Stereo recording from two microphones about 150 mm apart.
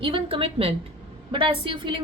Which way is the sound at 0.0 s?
35° right (ahead or behind).